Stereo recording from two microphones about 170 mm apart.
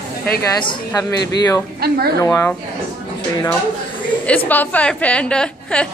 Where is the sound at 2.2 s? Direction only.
15° left (ahead or behind).